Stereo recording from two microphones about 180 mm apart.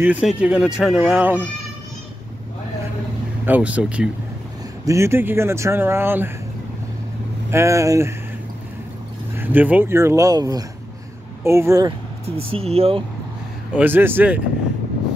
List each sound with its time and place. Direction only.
0.0 s speech: 5° right (ahead or behind)
3.4 s speech: 10° right (ahead or behind)
7.5 s speech: 15° right (ahead or behind)
9.4 s speech: 10° right (ahead or behind)
12.3 s speech: 35° right (ahead or behind)
13.7 s speech: 10° right (ahead or behind)